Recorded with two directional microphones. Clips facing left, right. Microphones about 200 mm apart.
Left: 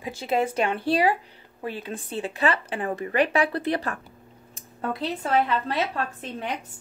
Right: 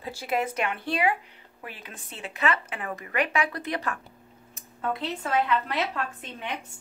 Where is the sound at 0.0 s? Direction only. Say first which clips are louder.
Left 4 dB; 20° left (ahead or behind).